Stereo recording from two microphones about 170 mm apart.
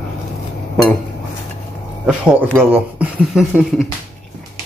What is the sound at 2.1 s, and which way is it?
Speech, 10° right (ahead or behind).